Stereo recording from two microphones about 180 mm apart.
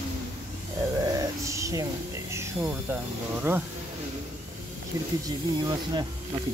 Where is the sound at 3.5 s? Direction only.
15° right (ahead or behind).